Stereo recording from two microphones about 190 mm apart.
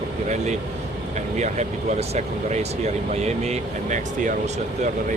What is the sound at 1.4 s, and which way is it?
Speech, 35° right (ahead or behind).